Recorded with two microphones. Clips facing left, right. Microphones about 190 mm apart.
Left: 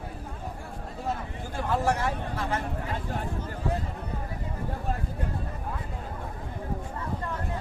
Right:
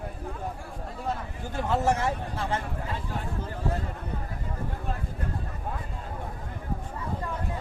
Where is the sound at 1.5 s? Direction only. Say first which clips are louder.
Right 1 dB; 25° right (ahead or behind).